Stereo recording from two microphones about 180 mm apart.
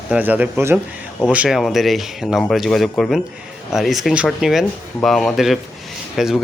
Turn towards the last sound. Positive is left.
turn(degrees=0)  # may be behind; listen again after turning